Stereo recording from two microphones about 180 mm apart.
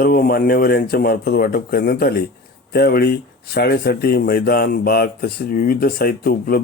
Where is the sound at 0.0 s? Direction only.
55° left (ahead or behind).